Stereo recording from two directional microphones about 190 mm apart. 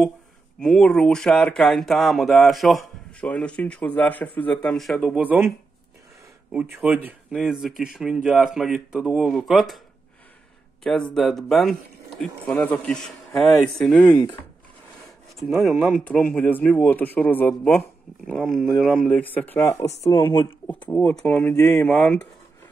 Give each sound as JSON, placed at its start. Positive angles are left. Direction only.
{"t": 0.6, "sound": "speech", "side_deg": 5}
{"t": 6.5, "sound": "speech", "side_deg": -5}
{"t": 10.8, "sound": "speech", "side_deg": 5}
{"t": 15.3, "sound": "a man's voice", "side_deg": 0}
{"t": 20.6, "sound": "a man's voice", "side_deg": 5}